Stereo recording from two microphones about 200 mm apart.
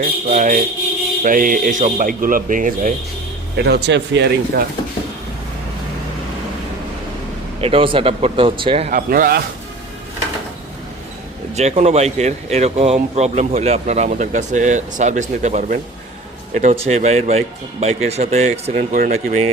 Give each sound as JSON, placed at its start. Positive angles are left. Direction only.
{"t": 0.3, "sound": "speech", "side_deg": -40}
{"t": 3.6, "sound": "speech", "side_deg": -55}
{"t": 7.6, "sound": "speech", "side_deg": -30}
{"t": 8.9, "sound": "speech", "side_deg": -45}
{"t": 11.5, "sound": "speech", "side_deg": -35}